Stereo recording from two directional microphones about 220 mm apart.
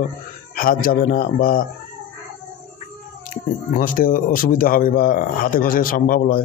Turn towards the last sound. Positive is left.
turn(degrees=40)  # may be behind; listen again after turning